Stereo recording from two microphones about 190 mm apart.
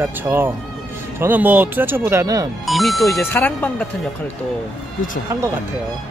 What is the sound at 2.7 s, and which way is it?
Speech, centre (ahead or behind).